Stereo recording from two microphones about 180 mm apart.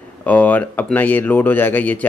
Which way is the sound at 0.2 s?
10° left (ahead or behind).